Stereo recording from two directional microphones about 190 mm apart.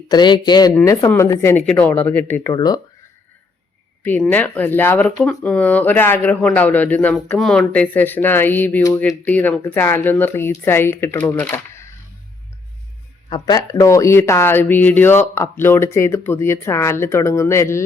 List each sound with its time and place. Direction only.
0.1 s speech: 20° left (ahead or behind)
4.0 s speech: 10° left (ahead or behind)
13.3 s speech: 20° left (ahead or behind)